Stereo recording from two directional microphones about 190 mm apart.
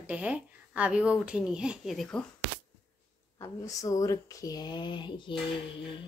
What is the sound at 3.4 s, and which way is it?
Speech, 15° left (ahead or behind).